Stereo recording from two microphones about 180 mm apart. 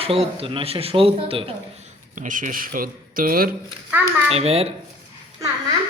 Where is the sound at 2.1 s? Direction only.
45° right (ahead or behind).